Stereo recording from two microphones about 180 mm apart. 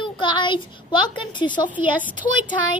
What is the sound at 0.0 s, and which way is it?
A woman's voice, 25° left (ahead or behind).